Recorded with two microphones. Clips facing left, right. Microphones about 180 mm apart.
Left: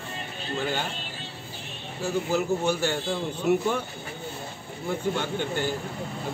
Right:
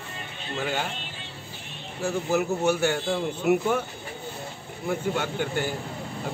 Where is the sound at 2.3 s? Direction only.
10° right (ahead or behind).